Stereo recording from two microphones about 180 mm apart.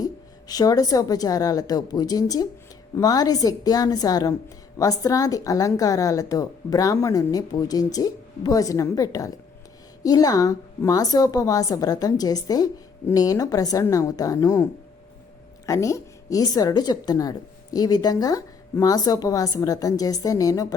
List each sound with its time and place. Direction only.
0.0 s a woman's voice: 20° left (ahead or behind)